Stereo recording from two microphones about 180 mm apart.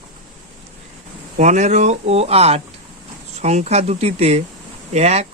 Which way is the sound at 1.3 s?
40° right (ahead or behind).